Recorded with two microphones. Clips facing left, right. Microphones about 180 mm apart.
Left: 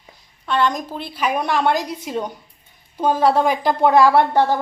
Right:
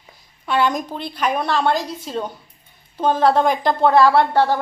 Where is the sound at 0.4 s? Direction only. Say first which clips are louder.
Right 1 dB; 5° right (ahead or behind).